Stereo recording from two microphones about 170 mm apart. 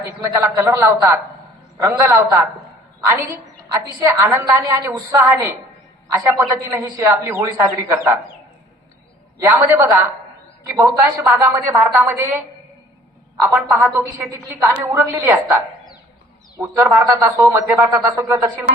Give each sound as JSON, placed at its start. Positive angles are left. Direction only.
{"t": 0.0, "sound": "a woman's voice", "side_deg": -20}
{"t": 9.6, "sound": "a woman's voice", "side_deg": -15}
{"t": 13.7, "sound": "a woman's voice", "side_deg": -15}
{"t": 16.6, "sound": "a woman's voice", "side_deg": -15}